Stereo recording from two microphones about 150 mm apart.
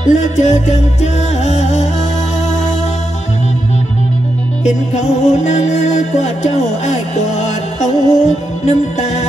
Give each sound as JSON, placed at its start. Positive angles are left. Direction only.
{"t": 0.4, "sound": "music", "side_deg": 50}
{"t": 4.9, "sound": "music", "side_deg": 50}